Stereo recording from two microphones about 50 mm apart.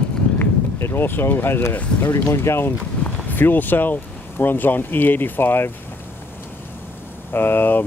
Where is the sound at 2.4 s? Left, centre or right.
Left.